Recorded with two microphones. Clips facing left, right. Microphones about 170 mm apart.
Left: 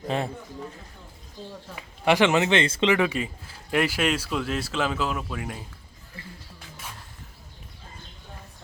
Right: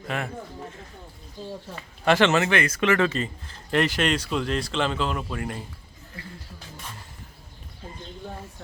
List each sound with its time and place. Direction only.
0.1 s speech: 30° left (ahead or behind)
1.7 s speech: 15° left (ahead or behind)
2.9 s speech: 15° left (ahead or behind)